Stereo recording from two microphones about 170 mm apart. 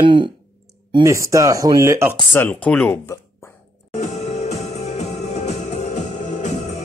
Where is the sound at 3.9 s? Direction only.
40° left (ahead or behind).